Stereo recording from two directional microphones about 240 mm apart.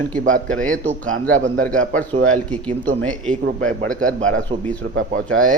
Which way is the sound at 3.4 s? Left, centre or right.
Right.